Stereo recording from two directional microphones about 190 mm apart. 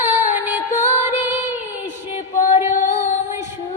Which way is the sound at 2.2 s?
40° left (ahead or behind).